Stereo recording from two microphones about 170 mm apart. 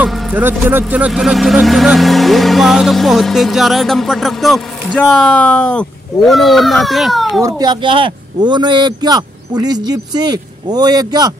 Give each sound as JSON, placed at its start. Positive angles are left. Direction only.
{"t": 0.0, "sound": "music", "side_deg": -5}
{"t": 0.4, "sound": "speech", "side_deg": -10}
{"t": 7.4, "sound": "speech", "side_deg": -25}